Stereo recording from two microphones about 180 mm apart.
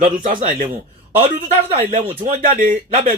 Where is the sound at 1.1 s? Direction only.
35° right (ahead or behind).